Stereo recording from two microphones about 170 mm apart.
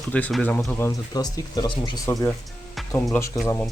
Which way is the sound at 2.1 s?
15° left (ahead or behind).